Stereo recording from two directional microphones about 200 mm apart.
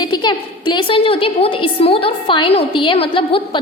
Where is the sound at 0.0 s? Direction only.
20° left (ahead or behind).